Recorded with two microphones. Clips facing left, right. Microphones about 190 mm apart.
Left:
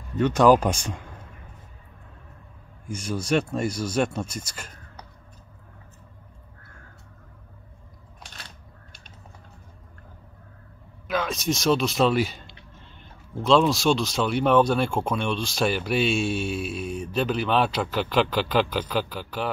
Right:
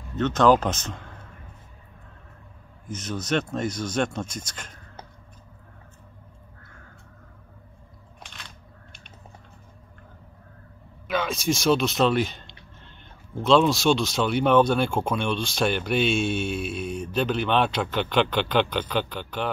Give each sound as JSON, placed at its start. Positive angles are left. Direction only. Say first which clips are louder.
{"t": 0.1, "sound": "speech", "louder": "left 2 dB", "side_deg": 10}
{"t": 2.9, "sound": "speech", "louder": "left 2 dB", "side_deg": 10}
{"t": 8.2, "sound": "a sound", "louder": "even", "side_deg": 40}
{"t": 11.1, "sound": "speech", "louder": "right 1 dB", "side_deg": 0}